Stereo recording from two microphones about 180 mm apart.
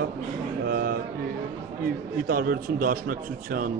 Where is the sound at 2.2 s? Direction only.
55° right (ahead or behind).